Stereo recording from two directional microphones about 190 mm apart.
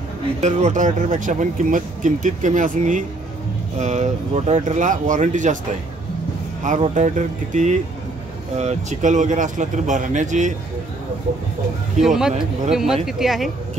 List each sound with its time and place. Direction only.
0.4 s speech: 35° right (ahead or behind)
6.6 s speech: 40° right (ahead or behind)
12.0 s speech: 5° right (ahead or behind)